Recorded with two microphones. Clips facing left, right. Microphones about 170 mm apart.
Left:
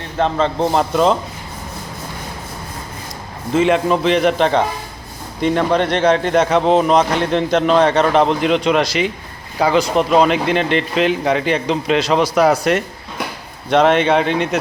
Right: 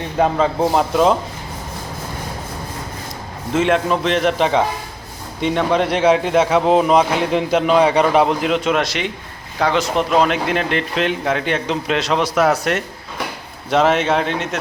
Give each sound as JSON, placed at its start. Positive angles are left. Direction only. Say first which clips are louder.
{"t": 0.0, "sound": "a man's voice", "louder": "right 1 dB", "side_deg": -10}
{"t": 3.5, "sound": "a man's voice", "louder": "left 2 dB", "side_deg": 0}